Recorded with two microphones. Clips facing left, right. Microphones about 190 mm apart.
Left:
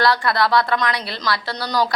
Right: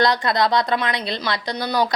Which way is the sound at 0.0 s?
20° right (ahead or behind).